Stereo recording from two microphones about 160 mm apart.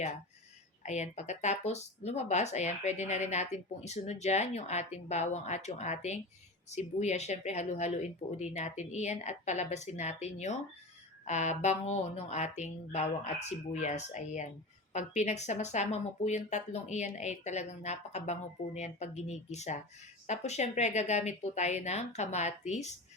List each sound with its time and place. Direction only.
0.9 s speech: 45° left (ahead or behind)